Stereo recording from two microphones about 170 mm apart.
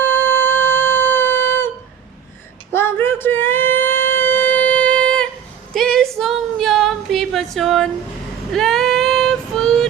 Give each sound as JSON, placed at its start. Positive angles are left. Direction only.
{"t": 0.0, "sound": "music", "side_deg": 15}
{"t": 2.7, "sound": "a sound", "side_deg": 15}
{"t": 6.1, "sound": "female singing", "side_deg": 0}